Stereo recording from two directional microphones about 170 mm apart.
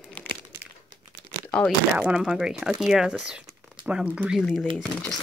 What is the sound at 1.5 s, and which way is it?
Speech, 5° left (ahead or behind).